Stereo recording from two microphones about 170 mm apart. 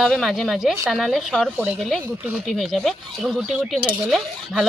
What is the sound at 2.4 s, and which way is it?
Speech, centre (ahead or behind).